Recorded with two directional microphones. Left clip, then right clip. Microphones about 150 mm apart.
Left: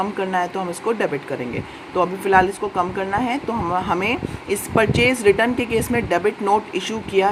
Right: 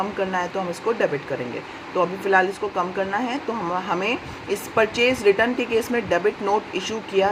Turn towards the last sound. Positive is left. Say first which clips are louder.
# left 2 dB
turn(degrees=30)  # may be behind; listen again after turning